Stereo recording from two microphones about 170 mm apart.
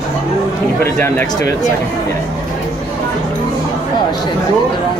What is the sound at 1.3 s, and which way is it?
Speech, 20° left (ahead or behind).